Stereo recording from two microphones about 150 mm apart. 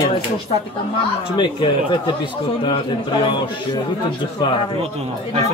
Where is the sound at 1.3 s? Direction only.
30° left (ahead or behind).